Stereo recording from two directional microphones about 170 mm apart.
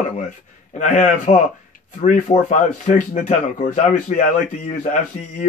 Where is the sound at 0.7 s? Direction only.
45° left (ahead or behind).